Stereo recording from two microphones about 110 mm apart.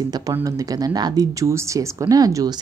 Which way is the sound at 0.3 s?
30° right (ahead or behind).